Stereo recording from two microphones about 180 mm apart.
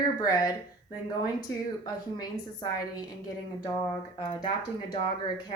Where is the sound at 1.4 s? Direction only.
20° left (ahead or behind).